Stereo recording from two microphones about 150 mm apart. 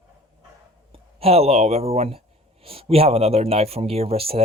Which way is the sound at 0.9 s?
40° right (ahead or behind).